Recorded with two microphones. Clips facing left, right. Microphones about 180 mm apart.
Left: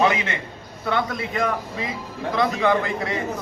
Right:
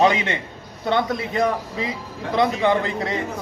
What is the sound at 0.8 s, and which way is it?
A man's voice, 25° right (ahead or behind).